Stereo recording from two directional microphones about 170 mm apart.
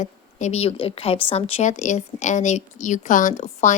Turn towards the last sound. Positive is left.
turn(degrees=45)  # may be behind; listen again after turning